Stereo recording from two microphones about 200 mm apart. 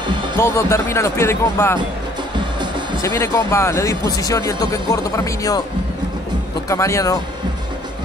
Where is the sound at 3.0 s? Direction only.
15° left (ahead or behind).